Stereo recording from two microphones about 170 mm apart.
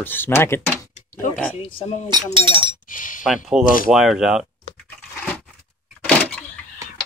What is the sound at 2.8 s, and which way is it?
Chink, 50° left (ahead or behind).